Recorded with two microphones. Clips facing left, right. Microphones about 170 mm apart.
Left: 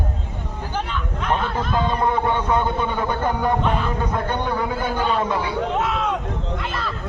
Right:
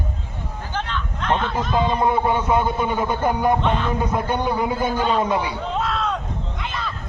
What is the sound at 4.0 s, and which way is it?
A man's voice, 10° right (ahead or behind).